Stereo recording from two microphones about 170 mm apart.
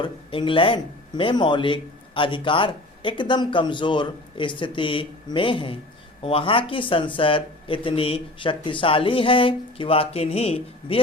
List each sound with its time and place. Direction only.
0.0 s speech: 30° left (ahead or behind)